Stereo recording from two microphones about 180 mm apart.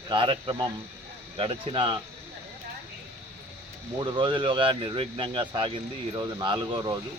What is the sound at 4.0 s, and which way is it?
Speech, 25° right (ahead or behind).